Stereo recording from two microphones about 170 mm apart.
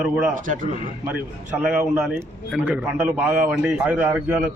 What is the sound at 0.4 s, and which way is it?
Speech, 50° right (ahead or behind).